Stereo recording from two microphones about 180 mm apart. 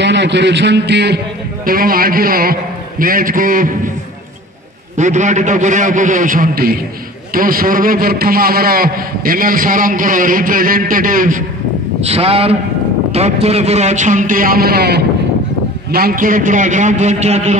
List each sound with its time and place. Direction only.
0.0 s a man's voice: 75° right (ahead or behind)
1.7 s a man's voice: 55° right (ahead or behind)
4.9 s a man's voice: 40° right (ahead or behind)
12.0 s a man's voice: 35° right (ahead or behind)